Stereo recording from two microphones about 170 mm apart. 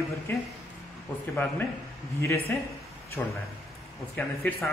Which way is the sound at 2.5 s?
10° left (ahead or behind).